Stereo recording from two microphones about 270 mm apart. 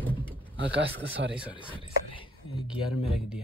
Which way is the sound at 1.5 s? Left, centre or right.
Centre.